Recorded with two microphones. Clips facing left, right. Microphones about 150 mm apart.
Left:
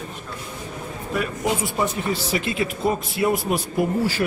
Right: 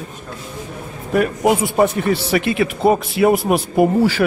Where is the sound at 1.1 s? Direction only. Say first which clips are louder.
Right 9 dB; 55° right (ahead or behind).